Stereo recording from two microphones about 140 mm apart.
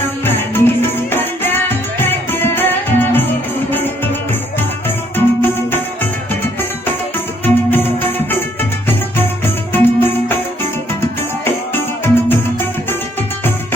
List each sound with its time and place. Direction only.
0.3 s music: 15° left (ahead or behind)
5.1 s music: 15° left (ahead or behind)
7.4 s music: 15° left (ahead or behind)
9.7 s music: 15° left (ahead or behind)
11.4 s music: 15° left (ahead or behind)